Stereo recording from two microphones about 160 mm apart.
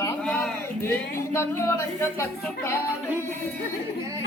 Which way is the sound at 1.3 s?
15° left (ahead or behind).